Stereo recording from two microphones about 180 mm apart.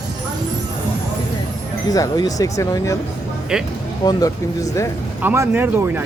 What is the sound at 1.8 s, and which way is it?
Speech, 20° left (ahead or behind).